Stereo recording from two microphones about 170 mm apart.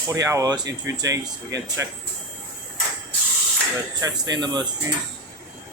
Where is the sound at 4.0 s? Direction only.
20° right (ahead or behind).